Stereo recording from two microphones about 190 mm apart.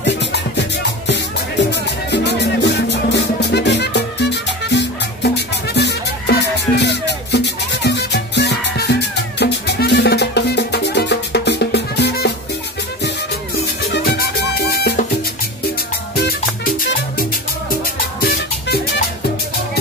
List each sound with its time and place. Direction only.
0.0 s music: 65° left (ahead or behind)
1.7 s music: 65° left (ahead or behind)
13.8 s music: 55° left (ahead or behind)
16.2 s music: 55° left (ahead or behind)
18.2 s music: 55° left (ahead or behind)